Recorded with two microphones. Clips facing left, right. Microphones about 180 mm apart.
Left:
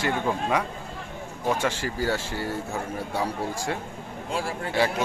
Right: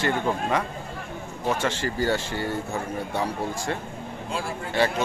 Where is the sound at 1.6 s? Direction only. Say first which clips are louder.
Right 2 dB; 5° left (ahead or behind).